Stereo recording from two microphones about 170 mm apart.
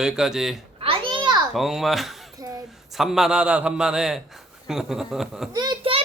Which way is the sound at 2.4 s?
20° right (ahead or behind).